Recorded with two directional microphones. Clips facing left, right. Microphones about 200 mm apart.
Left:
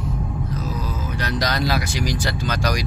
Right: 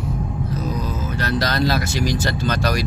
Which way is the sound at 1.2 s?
15° left (ahead or behind).